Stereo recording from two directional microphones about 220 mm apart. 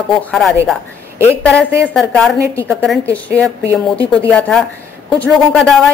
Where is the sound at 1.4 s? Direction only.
5° left (ahead or behind).